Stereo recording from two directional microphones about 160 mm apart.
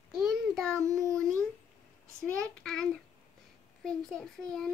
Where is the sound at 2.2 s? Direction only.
5° left (ahead or behind).